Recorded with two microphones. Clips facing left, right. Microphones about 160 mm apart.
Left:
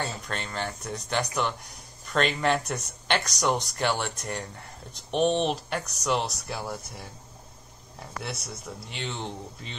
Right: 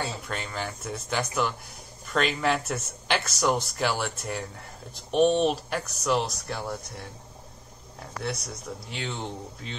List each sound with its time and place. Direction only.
0.0 s speech: 5° right (ahead or behind)
8.2 s speech: centre (ahead or behind)